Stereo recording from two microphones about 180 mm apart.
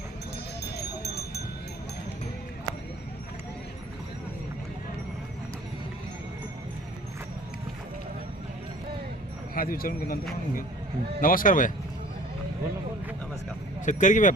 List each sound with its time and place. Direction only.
0.8 s a sound: 65° left (ahead or behind)
9.6 s speech: 55° left (ahead or behind)
11.2 s speech: 50° left (ahead or behind)
13.8 s speech: 45° left (ahead or behind)